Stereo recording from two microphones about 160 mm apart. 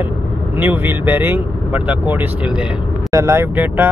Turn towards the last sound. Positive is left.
turn(degrees=-10)  # may be behind; listen again after turning